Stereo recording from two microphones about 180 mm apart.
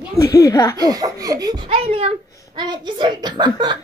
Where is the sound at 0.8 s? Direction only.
20° right (ahead or behind).